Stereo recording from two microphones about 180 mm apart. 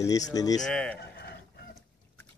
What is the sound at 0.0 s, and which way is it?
Speech, 20° left (ahead or behind).